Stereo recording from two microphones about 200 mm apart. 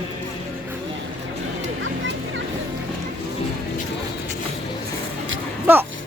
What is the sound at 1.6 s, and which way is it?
Music, 70° right (ahead or behind).